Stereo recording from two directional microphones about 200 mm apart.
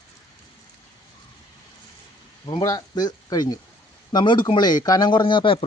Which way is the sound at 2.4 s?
20° left (ahead or behind).